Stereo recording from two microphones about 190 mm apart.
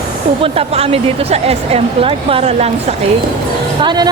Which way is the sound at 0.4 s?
30° right (ahead or behind).